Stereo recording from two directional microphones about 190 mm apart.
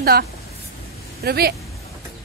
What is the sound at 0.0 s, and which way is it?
A woman's voice, 55° right (ahead or behind).